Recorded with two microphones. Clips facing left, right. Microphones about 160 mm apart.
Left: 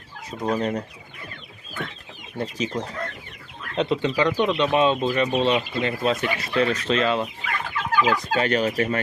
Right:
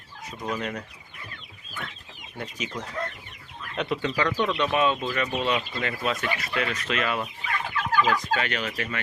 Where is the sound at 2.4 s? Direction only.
30° left (ahead or behind).